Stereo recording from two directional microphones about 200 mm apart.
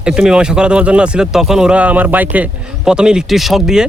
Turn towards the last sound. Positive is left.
turn(degrees=0)  # may be behind; listen again after turning